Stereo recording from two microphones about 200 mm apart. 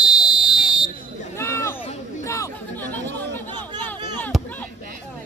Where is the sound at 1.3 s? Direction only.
15° left (ahead or behind).